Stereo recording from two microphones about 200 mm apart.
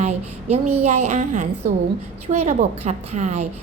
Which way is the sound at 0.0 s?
35° right (ahead or behind).